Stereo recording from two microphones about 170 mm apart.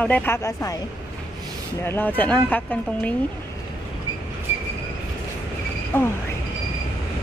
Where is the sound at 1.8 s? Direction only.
15° left (ahead or behind).